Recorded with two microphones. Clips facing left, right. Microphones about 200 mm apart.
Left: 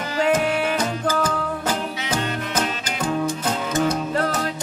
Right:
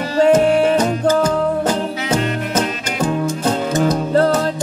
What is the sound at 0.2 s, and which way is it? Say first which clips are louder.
Music: right 8 dB; 30° right (ahead or behind).